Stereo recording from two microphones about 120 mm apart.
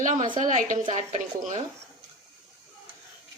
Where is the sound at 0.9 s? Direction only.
70° right (ahead or behind).